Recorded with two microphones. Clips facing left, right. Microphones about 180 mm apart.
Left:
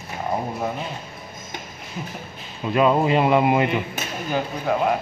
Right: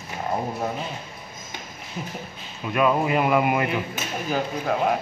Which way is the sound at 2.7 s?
25° left (ahead or behind).